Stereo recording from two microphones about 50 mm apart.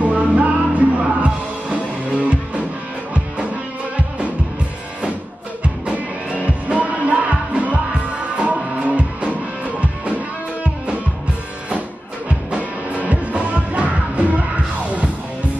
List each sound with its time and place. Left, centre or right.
0.0 s music: right
6.4 s music: right
12.3 s music: right